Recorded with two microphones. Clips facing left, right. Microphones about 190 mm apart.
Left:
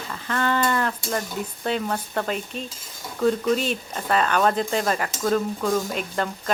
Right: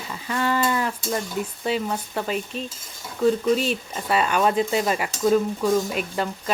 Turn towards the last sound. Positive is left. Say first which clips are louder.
# even
turn(degrees=-5)  # may be behind; listen again after turning